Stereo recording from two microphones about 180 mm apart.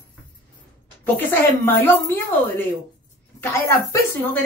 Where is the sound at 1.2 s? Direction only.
10° left (ahead or behind).